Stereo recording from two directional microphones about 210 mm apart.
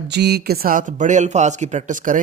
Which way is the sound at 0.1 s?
55° right (ahead or behind).